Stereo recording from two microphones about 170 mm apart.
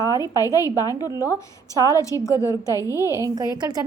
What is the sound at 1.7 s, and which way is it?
A woman's voice, 20° left (ahead or behind).